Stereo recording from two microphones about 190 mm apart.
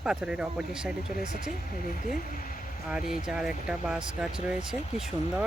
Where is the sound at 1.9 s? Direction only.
45° left (ahead or behind).